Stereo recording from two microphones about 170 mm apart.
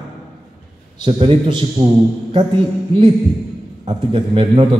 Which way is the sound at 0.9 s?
30° right (ahead or behind).